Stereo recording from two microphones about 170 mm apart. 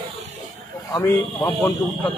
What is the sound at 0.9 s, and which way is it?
Speech, 20° left (ahead or behind).